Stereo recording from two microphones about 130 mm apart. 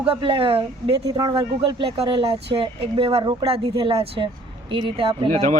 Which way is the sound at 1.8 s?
45° right (ahead or behind).